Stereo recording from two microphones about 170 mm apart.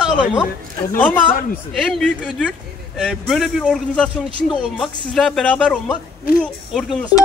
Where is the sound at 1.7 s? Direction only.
5° left (ahead or behind).